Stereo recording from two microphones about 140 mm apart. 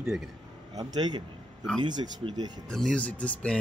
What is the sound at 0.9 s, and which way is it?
Speech, 30° right (ahead or behind).